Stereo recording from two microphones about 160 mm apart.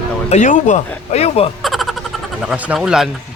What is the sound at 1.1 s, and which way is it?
Speech, 40° left (ahead or behind).